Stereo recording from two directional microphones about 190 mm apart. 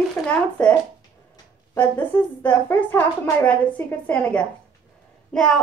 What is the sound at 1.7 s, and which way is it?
A woman's voice, 10° left (ahead or behind).